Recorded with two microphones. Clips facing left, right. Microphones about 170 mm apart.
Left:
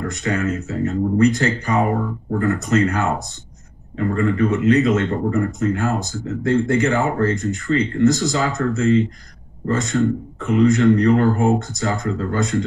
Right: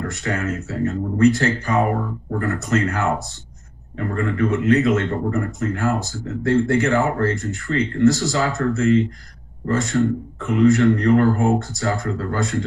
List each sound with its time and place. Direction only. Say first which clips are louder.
0.1 s a man's voice: left 3 dB; 15° left (ahead or behind)
4.1 s a man's voice: left 2 dB; 15° left (ahead or behind)